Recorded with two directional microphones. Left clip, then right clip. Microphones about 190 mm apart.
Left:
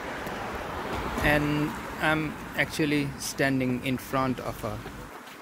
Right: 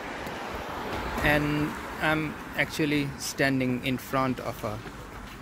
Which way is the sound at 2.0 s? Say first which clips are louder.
Left 1 dB; centre (ahead or behind).